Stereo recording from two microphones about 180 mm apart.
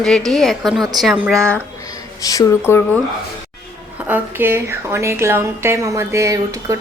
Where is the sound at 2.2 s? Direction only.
15° left (ahead or behind).